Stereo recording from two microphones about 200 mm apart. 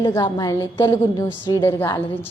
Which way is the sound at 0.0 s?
20° left (ahead or behind).